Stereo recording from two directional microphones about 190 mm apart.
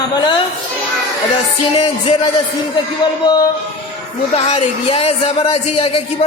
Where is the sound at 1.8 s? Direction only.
25° left (ahead or behind).